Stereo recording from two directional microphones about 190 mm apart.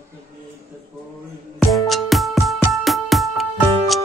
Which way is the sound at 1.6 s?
Centre (ahead or behind).